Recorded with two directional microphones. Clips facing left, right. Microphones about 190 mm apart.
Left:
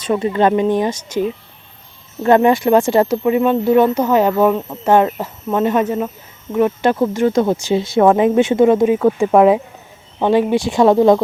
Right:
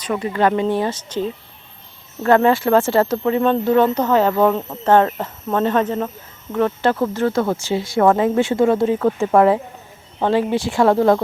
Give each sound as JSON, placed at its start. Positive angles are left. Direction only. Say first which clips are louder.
{"t": 0.0, "sound": "speech", "louder": "left 3 dB", "side_deg": 25}